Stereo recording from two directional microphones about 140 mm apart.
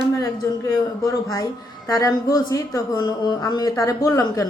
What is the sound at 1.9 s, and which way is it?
Speech, 25° left (ahead or behind).